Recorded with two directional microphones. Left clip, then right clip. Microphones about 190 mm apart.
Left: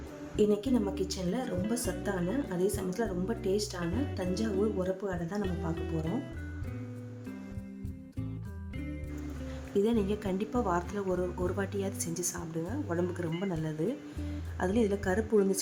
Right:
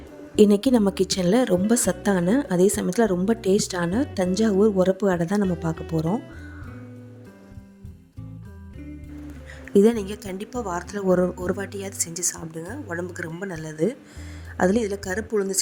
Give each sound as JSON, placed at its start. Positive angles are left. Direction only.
{"t": 0.3, "sound": "a woman's voice", "side_deg": -45}
{"t": 9.7, "sound": "a woman's voice", "side_deg": -40}